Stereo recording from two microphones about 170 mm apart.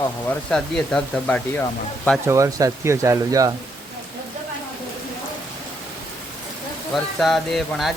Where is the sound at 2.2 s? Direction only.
20° right (ahead or behind).